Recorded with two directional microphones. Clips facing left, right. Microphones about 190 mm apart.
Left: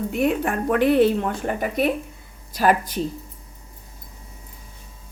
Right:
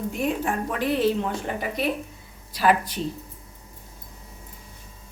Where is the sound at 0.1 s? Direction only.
65° left (ahead or behind); by 3.0 s 45° left (ahead or behind).